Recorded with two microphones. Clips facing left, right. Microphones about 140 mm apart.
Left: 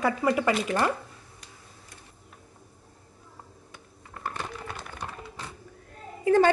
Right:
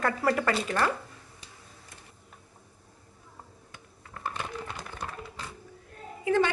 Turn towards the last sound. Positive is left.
turn(degrees=40)  # may be behind; listen again after turning